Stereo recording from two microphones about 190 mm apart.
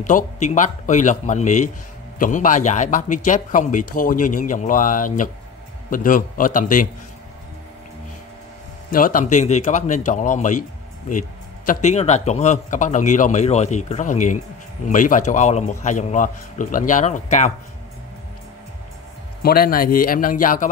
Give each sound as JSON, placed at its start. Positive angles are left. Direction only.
{"t": 0.0, "sound": "a man's voice", "side_deg": 40}
{"t": 8.9, "sound": "a man's voice", "side_deg": 45}
{"t": 19.4, "sound": "speech", "side_deg": 50}